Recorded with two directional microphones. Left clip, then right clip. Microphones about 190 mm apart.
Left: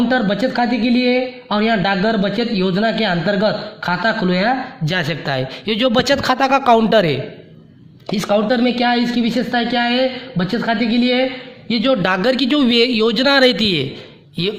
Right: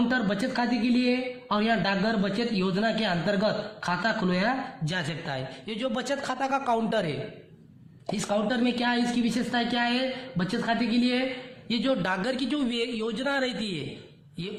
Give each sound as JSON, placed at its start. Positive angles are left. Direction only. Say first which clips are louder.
{"t": 0.1, "sound": "a woman's voice", "louder": "left 10 dB", "side_deg": 25}